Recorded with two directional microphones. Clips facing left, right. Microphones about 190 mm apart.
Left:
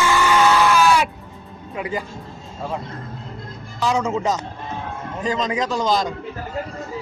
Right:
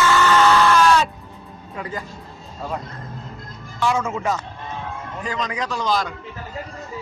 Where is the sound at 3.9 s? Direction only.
20° left (ahead or behind).